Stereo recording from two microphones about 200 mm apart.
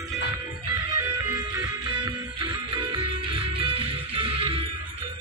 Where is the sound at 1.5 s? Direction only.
20° right (ahead or behind).